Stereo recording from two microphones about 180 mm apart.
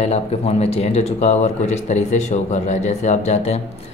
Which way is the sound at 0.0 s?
35° left (ahead or behind).